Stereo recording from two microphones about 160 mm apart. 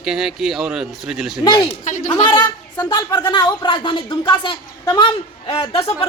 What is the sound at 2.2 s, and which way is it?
A woman's voice, 25° left (ahead or behind).